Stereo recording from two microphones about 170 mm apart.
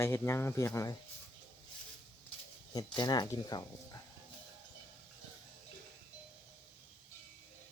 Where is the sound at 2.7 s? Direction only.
25° left (ahead or behind).